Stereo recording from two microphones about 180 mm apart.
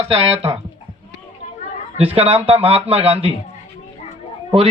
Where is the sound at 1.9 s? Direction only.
35° right (ahead or behind).